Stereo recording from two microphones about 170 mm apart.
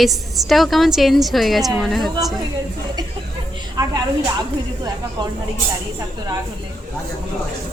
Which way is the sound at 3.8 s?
25° right (ahead or behind).